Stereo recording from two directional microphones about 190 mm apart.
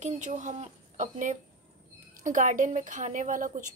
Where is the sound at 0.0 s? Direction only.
40° right (ahead or behind).